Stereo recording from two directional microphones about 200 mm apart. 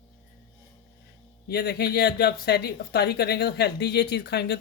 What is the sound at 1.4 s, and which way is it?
Speech, 50° left (ahead or behind).